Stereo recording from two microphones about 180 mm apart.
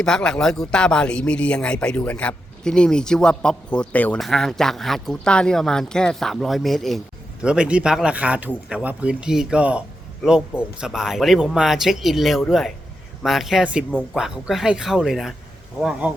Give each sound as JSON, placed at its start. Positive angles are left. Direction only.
{"t": 0.0, "sound": "a man's voice", "side_deg": 5}